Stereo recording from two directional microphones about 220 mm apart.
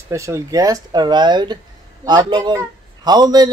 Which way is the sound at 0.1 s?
15° right (ahead or behind).